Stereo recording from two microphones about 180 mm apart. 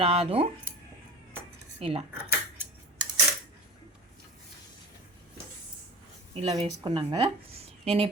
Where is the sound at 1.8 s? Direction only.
35° right (ahead or behind).